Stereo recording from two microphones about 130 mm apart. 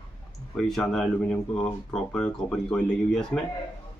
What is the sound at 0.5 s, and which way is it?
Speech, 5° left (ahead or behind).